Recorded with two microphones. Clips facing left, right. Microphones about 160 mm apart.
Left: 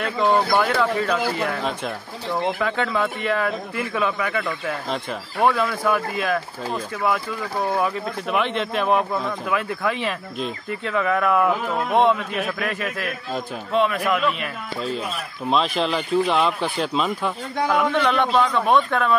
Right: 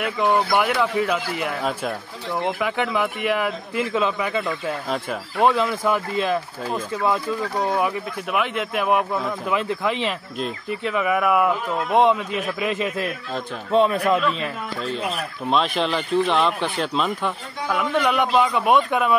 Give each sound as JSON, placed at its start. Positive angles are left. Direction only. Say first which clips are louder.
{"t": 0.6, "sound": "a man's voice", "louder": "even", "side_deg": -15}
{"t": 7.8, "sound": "speech", "louder": "even", "side_deg": -5}
{"t": 9.5, "sound": "a man's voice", "louder": "right 1 dB", "side_deg": -20}
{"t": 15.5, "sound": "speech", "louder": "even", "side_deg": 0}